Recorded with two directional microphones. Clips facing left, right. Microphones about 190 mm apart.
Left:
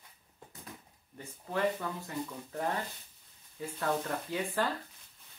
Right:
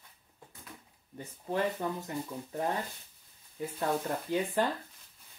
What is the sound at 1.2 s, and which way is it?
Speech, 20° right (ahead or behind).